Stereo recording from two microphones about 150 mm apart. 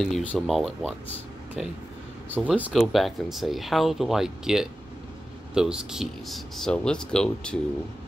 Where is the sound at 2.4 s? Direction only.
10° right (ahead or behind).